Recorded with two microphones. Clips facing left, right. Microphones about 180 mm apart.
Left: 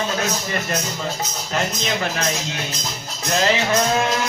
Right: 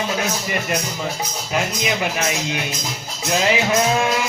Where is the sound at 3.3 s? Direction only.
5° right (ahead or behind).